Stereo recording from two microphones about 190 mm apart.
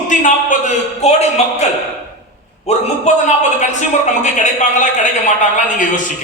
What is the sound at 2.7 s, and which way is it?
A man's voice, 35° left (ahead or behind).